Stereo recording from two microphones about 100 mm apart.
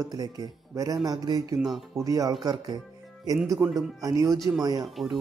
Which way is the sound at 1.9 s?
35° right (ahead or behind).